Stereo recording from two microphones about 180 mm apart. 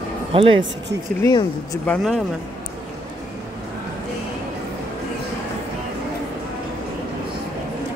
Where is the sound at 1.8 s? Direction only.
5° left (ahead or behind).